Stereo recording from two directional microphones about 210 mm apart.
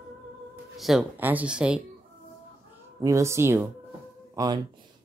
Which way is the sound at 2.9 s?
15° right (ahead or behind).